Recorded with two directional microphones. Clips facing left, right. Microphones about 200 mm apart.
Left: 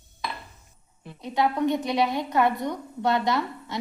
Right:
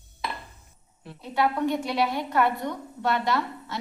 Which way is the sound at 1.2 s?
20° left (ahead or behind).